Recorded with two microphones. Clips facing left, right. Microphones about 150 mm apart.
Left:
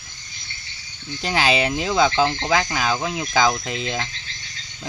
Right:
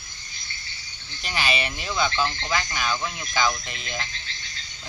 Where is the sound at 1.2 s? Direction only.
90° left.